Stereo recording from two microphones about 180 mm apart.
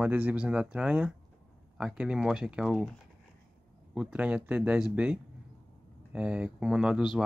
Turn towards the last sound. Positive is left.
turn(degrees=0)  # may be behind; listen again after turning